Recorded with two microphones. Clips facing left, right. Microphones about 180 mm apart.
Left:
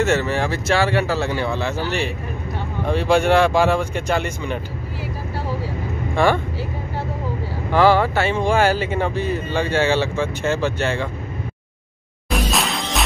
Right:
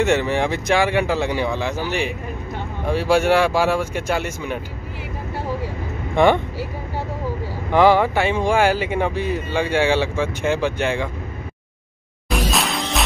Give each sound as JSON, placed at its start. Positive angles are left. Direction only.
{"t": 0.0, "sound": "speech", "side_deg": -15}
{"t": 6.1, "sound": "speech", "side_deg": -20}
{"t": 7.7, "sound": "speech", "side_deg": -15}
{"t": 12.3, "sound": "music", "side_deg": 0}